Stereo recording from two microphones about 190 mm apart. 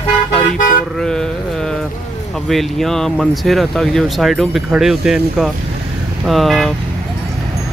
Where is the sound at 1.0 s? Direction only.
5° left (ahead or behind).